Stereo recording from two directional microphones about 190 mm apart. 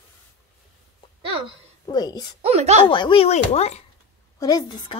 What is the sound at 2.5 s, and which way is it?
Speech, 35° right (ahead or behind).